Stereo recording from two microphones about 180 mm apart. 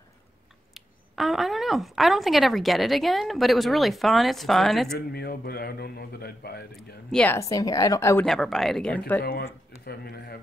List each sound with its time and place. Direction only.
0.7 s speech: centre (ahead or behind)
4.9 s a man's voice: 60° left (ahead or behind)
7.1 s speech: 5° left (ahead or behind)
7.3 s speech: 20° left (ahead or behind)
8.3 s speech: centre (ahead or behind)
9.2 s a man's voice: 55° left (ahead or behind)